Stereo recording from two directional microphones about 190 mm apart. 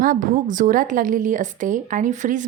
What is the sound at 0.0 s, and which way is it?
A woman's voice, 45° right (ahead or behind).